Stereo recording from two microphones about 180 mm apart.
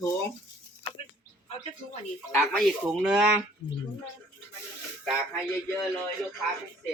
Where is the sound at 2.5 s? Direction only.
Centre (ahead or behind).